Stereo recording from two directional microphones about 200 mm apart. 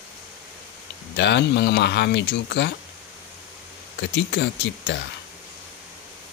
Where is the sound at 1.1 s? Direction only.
60° left (ahead or behind).